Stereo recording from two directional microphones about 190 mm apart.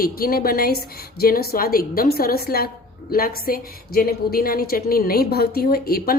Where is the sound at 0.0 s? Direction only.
50° left (ahead or behind).